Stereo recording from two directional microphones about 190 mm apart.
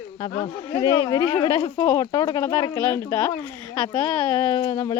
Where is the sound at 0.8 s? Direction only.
20° left (ahead or behind).